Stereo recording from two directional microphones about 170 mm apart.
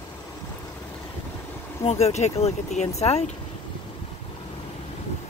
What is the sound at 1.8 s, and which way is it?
Speech, 40° left (ahead or behind).